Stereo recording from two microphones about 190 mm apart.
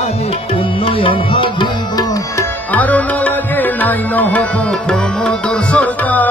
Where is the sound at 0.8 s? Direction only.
25° left (ahead or behind).